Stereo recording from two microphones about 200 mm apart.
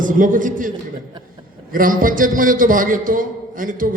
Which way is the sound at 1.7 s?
45° right (ahead or behind).